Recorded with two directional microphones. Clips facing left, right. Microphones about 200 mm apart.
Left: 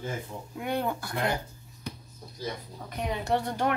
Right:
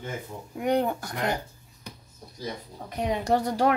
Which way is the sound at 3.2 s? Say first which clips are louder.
Right 4 dB; 40° right (ahead or behind).